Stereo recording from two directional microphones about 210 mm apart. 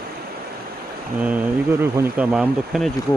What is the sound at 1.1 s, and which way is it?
Speech, 5° right (ahead or behind).